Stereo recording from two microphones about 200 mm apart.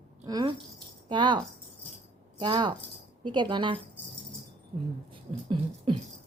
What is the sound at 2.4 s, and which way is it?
A woman's voice, 20° right (ahead or behind).